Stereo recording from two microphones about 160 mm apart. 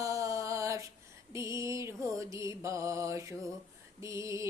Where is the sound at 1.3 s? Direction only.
20° right (ahead or behind).